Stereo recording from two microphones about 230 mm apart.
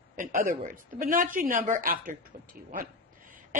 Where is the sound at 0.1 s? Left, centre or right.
Right.